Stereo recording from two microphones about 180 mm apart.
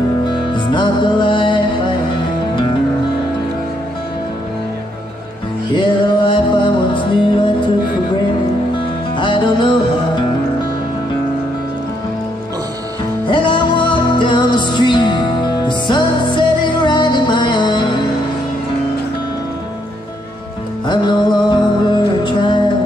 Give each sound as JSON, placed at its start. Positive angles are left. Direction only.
{"t": 0.5, "sound": "music", "side_deg": 25}
{"t": 5.8, "sound": "music", "side_deg": 25}
{"t": 9.1, "sound": "music", "side_deg": 25}
{"t": 13.3, "sound": "music", "side_deg": 25}
{"t": 20.8, "sound": "music", "side_deg": 25}